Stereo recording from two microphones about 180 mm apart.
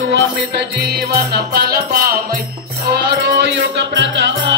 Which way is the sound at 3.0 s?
75° right (ahead or behind).